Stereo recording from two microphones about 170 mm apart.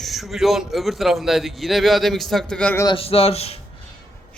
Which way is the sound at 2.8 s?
35° left (ahead or behind).